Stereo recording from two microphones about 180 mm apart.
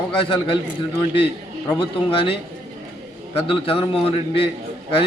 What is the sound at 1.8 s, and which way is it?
Speech, 30° left (ahead or behind).